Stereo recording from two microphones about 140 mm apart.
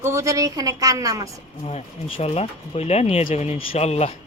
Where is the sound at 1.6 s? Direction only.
45° left (ahead or behind).